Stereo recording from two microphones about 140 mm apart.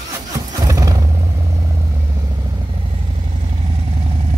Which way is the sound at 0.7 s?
25° right (ahead or behind).